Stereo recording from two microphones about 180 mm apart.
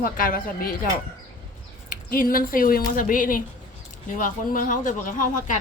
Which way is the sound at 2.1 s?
50° left (ahead or behind).